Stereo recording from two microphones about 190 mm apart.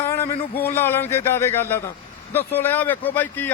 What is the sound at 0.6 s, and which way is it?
Speech, 10° left (ahead or behind).